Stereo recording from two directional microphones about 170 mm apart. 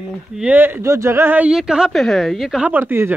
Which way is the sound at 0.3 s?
10° right (ahead or behind).